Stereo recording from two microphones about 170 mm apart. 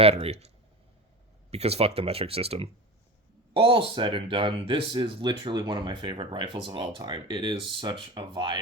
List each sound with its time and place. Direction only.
0.0 s speech: 35° right (ahead or behind)